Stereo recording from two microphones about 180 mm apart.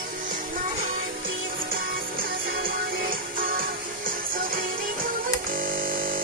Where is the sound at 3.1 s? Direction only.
50° right (ahead or behind).